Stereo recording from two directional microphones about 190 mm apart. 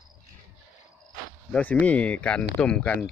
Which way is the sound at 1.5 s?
10° left (ahead or behind).